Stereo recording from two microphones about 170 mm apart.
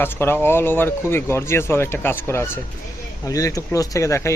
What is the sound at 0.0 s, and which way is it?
Speech, 15° left (ahead or behind).